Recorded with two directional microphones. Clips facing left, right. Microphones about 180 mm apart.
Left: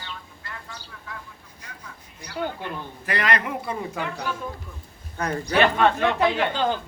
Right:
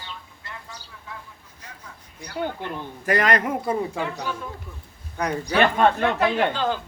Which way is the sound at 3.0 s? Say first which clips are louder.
Right 4 dB; 45° right (ahead or behind).